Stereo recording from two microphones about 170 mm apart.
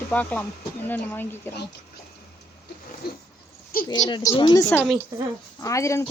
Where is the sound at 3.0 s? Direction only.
65° left (ahead or behind).